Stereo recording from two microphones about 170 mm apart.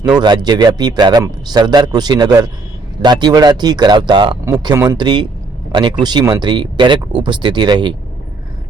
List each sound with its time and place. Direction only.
0.2 s speech: 25° right (ahead or behind)